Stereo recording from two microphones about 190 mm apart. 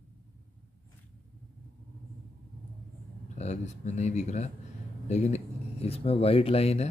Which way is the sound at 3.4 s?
35° left (ahead or behind).